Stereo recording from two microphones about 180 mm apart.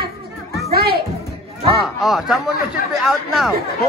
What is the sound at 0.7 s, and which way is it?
Speech, 60° right (ahead or behind).